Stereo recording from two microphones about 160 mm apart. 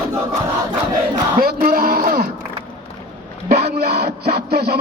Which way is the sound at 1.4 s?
65° right (ahead or behind).